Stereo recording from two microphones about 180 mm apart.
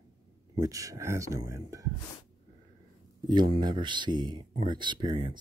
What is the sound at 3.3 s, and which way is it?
Speech, 25° right (ahead or behind).